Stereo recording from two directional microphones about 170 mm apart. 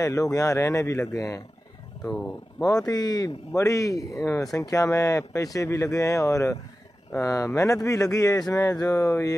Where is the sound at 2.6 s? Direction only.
20° left (ahead or behind).